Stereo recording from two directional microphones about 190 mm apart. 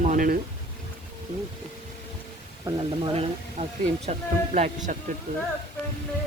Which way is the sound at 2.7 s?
25° right (ahead or behind).